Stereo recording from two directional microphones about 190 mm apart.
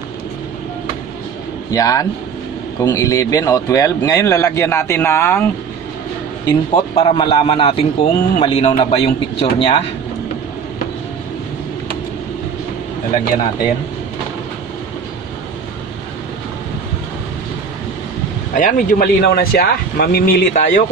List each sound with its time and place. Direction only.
1.7 s speech: 20° left (ahead or behind)
7.0 s a man's voice: 25° left (ahead or behind)
18.5 s speech: 45° left (ahead or behind)